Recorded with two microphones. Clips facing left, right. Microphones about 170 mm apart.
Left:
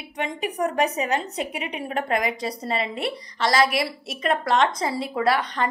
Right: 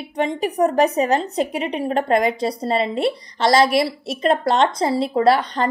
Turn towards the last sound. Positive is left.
turn(degrees=-35)  # may be behind; listen again after turning